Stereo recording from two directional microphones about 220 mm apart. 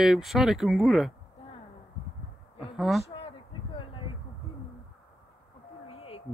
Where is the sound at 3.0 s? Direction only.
25° left (ahead or behind).